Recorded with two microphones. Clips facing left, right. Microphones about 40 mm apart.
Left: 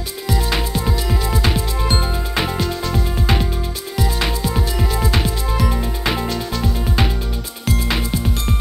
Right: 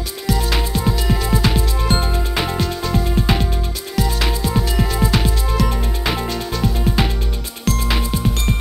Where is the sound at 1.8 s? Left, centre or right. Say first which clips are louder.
Right 1 dB; centre.